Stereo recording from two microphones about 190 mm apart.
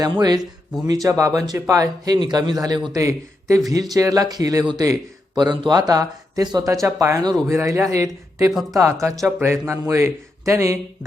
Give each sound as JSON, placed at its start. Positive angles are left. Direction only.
{"t": 0.0, "sound": "a man's voice", "side_deg": -20}